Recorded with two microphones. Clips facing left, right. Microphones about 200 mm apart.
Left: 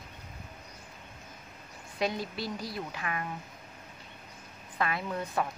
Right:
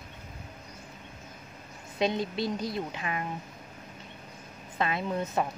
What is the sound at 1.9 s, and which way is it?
A woman's voice, 20° right (ahead or behind).